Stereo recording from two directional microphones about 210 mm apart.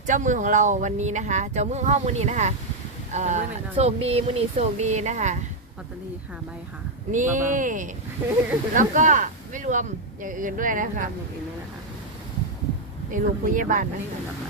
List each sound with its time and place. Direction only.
0.1 s speech: 35° right (ahead or behind)
7.1 s speech: 35° right (ahead or behind)
13.1 s speech: 40° right (ahead or behind)